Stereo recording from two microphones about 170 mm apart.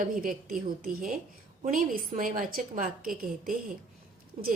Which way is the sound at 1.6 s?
55° right (ahead or behind).